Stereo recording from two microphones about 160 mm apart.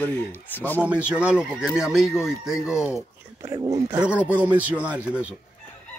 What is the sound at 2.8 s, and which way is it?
Speech, 15° left (ahead or behind).